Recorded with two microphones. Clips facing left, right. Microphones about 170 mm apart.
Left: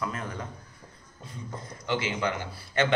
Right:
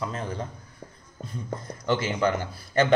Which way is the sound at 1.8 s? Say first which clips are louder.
Right 5 dB; 45° right (ahead or behind).